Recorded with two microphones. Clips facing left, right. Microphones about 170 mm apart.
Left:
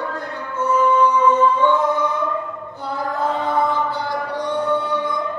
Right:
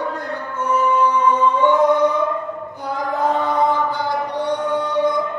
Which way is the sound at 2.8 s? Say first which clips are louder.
Right 2 dB; 15° right (ahead or behind).